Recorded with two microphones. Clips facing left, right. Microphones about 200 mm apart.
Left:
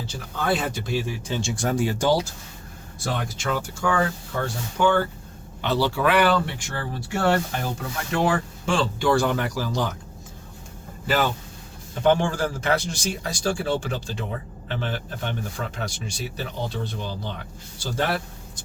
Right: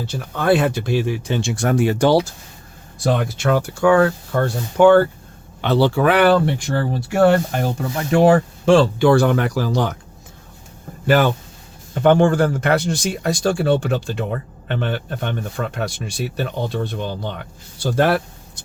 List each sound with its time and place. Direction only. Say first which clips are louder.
0.1 s speech: right 8 dB; 65° right (ahead or behind)
11.0 s speech: right 7 dB; 60° right (ahead or behind)